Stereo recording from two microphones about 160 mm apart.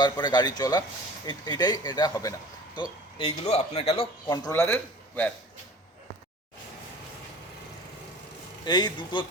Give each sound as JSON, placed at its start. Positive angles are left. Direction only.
{"t": 0.0, "sound": "speech", "side_deg": 25}
{"t": 3.2, "sound": "a man's voice", "side_deg": 40}
{"t": 4.3, "sound": "a man's voice", "side_deg": 20}
{"t": 8.6, "sound": "speech", "side_deg": 25}